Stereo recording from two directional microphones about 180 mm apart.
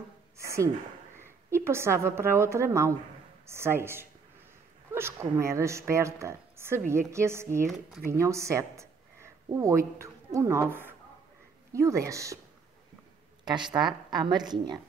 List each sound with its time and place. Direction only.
0.4 s a sound: 15° right (ahead or behind)
1.2 s a woman's voice: 15° right (ahead or behind)
13.5 s a woman's voice: 25° right (ahead or behind)